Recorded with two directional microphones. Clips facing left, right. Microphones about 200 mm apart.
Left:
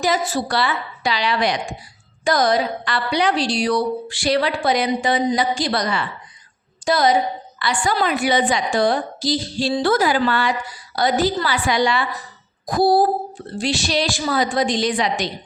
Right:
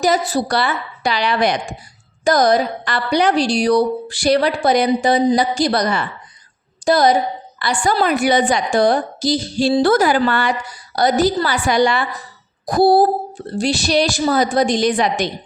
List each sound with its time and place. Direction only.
0.0 s a woman's voice: 40° right (ahead or behind)
13.5 s a woman's voice: 40° right (ahead or behind)